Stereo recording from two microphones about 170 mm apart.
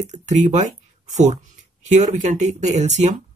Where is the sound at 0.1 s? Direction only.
45° right (ahead or behind).